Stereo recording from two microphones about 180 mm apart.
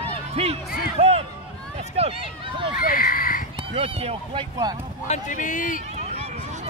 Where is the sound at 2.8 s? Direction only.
55° left (ahead or behind).